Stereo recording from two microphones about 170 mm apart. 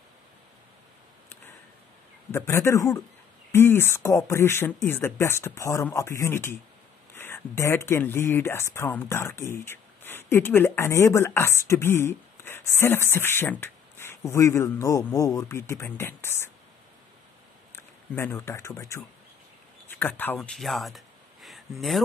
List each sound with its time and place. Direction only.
2.3 s speech: 15° left (ahead or behind)
17.7 s speech: 15° left (ahead or behind)